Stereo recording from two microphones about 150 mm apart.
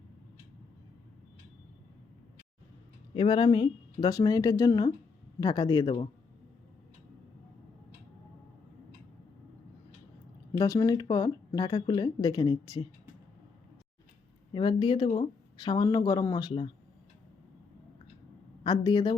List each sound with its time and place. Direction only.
3.2 s speech: 35° left (ahead or behind)
10.6 s speech: 20° left (ahead or behind)
14.5 s speech: 35° left (ahead or behind)
18.6 s speech: 30° left (ahead or behind)